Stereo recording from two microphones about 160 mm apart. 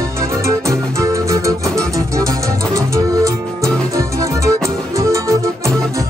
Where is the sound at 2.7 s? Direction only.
20° right (ahead or behind).